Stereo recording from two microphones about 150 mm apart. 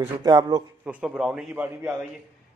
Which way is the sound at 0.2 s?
25° right (ahead or behind).